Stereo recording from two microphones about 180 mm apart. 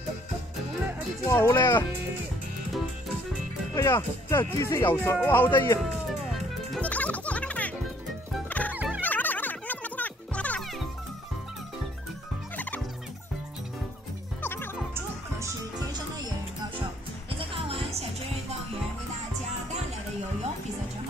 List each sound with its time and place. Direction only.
1.2 s speech: 15° left (ahead or behind)
3.7 s speech: 15° left (ahead or behind)
6.3 s music: 5° left (ahead or behind)
8.7 s dog: 5° right (ahead or behind)
9.0 s music: 10° left (ahead or behind)
14.4 s music: 10° left (ahead or behind)
15.0 s music: 15° right (ahead or behind)
17.4 s music: 30° right (ahead or behind)